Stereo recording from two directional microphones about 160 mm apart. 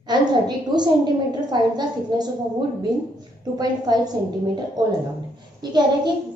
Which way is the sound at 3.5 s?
25° right (ahead or behind).